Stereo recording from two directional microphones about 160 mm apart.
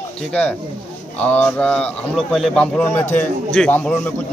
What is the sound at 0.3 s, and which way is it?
A man's voice, 10° left (ahead or behind).